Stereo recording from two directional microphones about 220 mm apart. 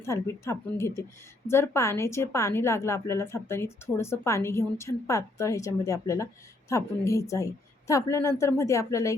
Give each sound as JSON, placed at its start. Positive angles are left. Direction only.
{"t": 0.0, "sound": "a woman's voice", "side_deg": 10}